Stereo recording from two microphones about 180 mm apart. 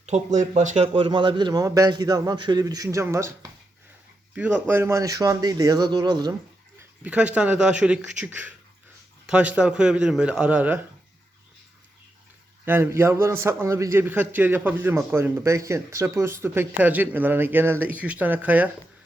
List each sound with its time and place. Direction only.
0.0 s a man's voice: 40° right (ahead or behind); by 3.3 s 15° right (ahead or behind)
4.4 s a man's voice: 10° right (ahead or behind)
7.0 s a man's voice: 5° right (ahead or behind)
12.6 s a man's voice: 10° right (ahead or behind)